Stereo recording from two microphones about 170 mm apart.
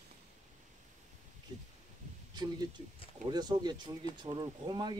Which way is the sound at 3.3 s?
25° right (ahead or behind).